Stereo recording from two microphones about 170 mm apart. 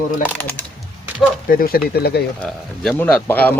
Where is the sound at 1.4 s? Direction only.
60° left (ahead or behind).